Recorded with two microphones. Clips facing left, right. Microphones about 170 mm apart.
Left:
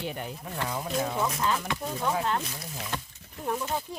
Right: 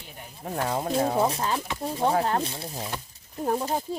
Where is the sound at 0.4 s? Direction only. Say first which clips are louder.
Right 8 dB; 40° right (ahead or behind).